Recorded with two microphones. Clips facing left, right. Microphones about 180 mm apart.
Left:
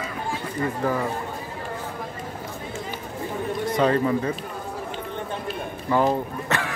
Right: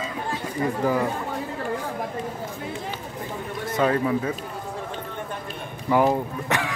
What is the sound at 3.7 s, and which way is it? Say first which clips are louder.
Speech: even; 5° right (ahead or behind).